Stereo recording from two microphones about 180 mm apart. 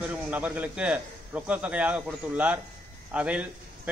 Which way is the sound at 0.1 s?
10° right (ahead or behind).